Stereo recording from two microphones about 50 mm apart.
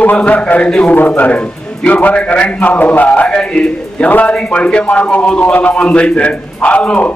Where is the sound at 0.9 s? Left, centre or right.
Left.